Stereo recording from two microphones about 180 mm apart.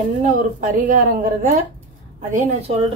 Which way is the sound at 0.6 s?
45° right (ahead or behind).